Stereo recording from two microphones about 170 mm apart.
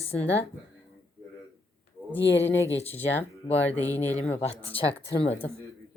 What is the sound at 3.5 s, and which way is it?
Speech, 10° left (ahead or behind).